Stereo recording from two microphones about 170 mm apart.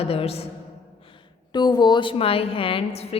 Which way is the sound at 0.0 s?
35° left (ahead or behind).